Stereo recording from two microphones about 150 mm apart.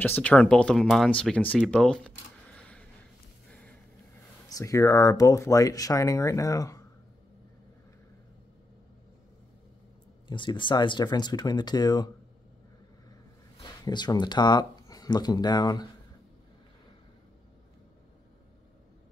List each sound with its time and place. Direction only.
0.0 s speech: 10° left (ahead or behind)
1.7 s a sound: 5° left (ahead or behind)
4.5 s speech: 20° left (ahead or behind)
10.2 s speech: 30° left (ahead or behind)
13.6 s speech: 30° left (ahead or behind)